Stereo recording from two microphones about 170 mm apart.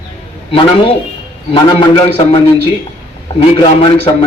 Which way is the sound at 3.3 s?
30° left (ahead or behind).